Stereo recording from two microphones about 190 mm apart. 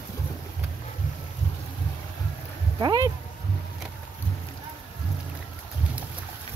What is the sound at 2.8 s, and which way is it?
Speech, 20° right (ahead or behind).